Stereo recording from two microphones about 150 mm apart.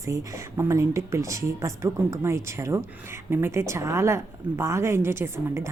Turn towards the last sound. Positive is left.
turn(degrees=-20)  # may be behind; listen again after turning